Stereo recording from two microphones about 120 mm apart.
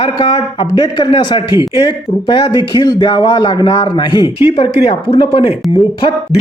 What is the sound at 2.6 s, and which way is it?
A man's voice, 45° left (ahead or behind).